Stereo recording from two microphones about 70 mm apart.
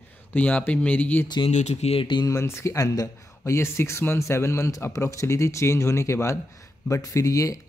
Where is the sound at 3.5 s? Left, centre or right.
Left.